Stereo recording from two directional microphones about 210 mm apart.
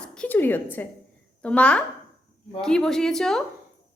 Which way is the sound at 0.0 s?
5° left (ahead or behind).